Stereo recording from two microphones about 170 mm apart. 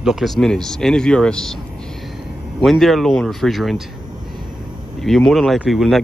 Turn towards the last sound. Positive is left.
turn(degrees=0)  # may be behind; listen again after turning